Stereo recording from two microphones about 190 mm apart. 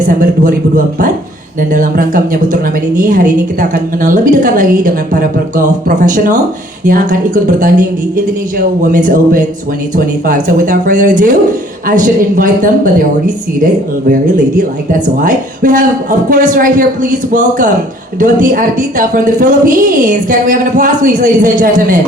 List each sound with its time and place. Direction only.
0.0 s a woman's voice: 45° right (ahead or behind)